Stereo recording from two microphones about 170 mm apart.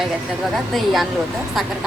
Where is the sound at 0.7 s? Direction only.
Centre (ahead or behind).